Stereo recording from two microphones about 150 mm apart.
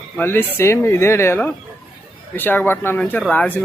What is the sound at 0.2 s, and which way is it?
Speech, 15° left (ahead or behind).